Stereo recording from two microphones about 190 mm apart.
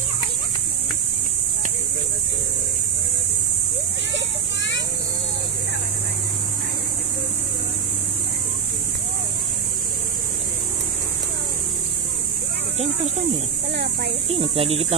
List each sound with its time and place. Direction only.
14.3 s speech: 30° right (ahead or behind)